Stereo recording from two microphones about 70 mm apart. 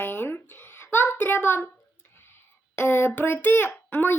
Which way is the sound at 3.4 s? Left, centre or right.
Left.